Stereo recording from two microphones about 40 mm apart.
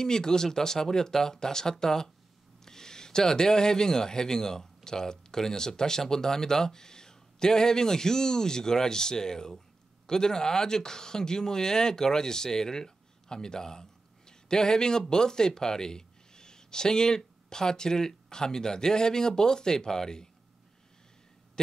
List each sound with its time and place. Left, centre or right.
0.0 s speech: centre